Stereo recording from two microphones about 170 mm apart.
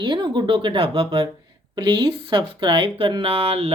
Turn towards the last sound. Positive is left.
turn(degrees=-35)  # may be behind; listen again after turning